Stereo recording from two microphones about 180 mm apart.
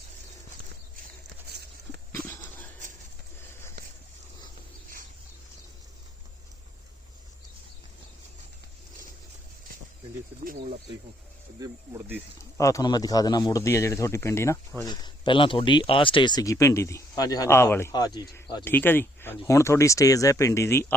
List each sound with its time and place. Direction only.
1.5 s a sound: 65° right (ahead or behind)
2.2 s dog: 10° left (ahead or behind)
11.6 s speech: 15° right (ahead or behind)
12.5 s a man's voice: 15° left (ahead or behind)
14.8 s speech: 25° left (ahead or behind)
18.6 s a man's voice: 10° left (ahead or behind)